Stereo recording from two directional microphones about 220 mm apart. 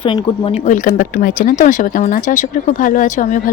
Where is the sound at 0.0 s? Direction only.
20° left (ahead or behind).